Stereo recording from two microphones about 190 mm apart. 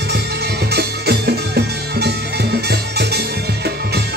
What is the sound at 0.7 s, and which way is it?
Music, 60° right (ahead or behind).